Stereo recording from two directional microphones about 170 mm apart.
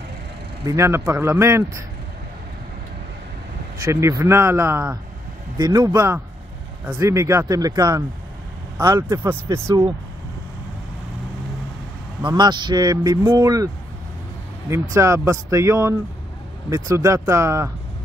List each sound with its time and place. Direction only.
0.7 s speech: 15° right (ahead or behind)
3.8 s a man's voice: 15° right (ahead or behind)
12.2 s a man's voice: 25° right (ahead or behind)
14.7 s speech: 15° right (ahead or behind)